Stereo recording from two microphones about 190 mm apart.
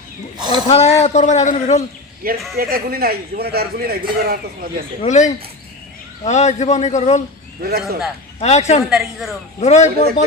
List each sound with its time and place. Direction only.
0.3 s speech: 20° right (ahead or behind)
0.7 s a man's voice: 35° left (ahead or behind)
2.2 s speech: 50° right (ahead or behind)
5.0 s a man's voice: 40° left (ahead or behind)
7.6 s speech: 55° right (ahead or behind)
8.4 s a man's voice: 35° left (ahead or behind)
8.9 s a woman's voice: centre (ahead or behind)
9.6 s a man's voice: 35° left (ahead or behind)